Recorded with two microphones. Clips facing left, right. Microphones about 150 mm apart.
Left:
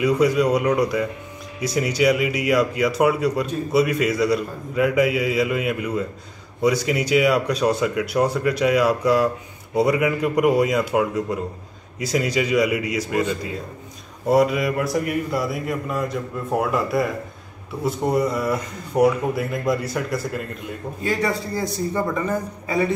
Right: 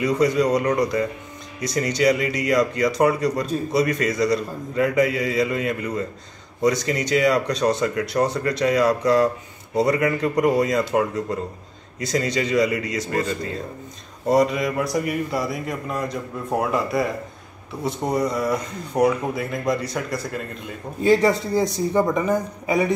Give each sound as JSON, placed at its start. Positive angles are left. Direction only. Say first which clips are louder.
{"t": 0.0, "sound": "a man's voice", "louder": "left 1 dB", "side_deg": 10}
{"t": 21.0, "sound": "a man's voice", "louder": "right 6 dB", "side_deg": -25}